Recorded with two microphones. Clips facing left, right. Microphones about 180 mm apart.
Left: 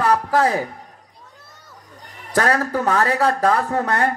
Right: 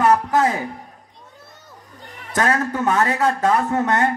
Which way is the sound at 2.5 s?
35° left (ahead or behind).